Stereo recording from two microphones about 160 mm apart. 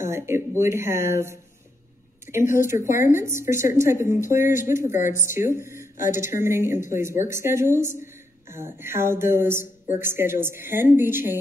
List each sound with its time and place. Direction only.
0.0 s a woman's voice: 15° right (ahead or behind)